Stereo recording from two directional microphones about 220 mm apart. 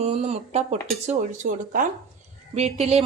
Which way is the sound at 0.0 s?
30° right (ahead or behind).